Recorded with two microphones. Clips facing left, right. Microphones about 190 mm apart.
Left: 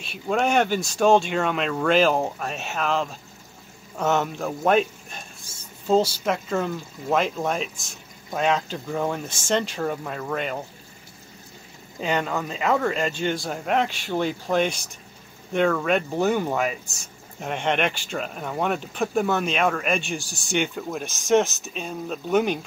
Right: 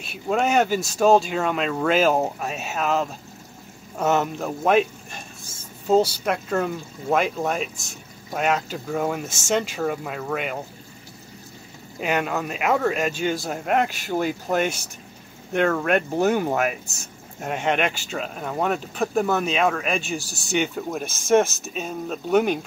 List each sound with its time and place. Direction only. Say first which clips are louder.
0.0 s speech: right 1 dB; 5° right (ahead or behind)
12.0 s speech: right 1 dB; 10° right (ahead or behind)
15.8 s speech: right 2 dB; 5° right (ahead or behind)
20.2 s speech: right 2 dB; 40° right (ahead or behind)
20.5 s speech: right 1 dB; 5° right (ahead or behind)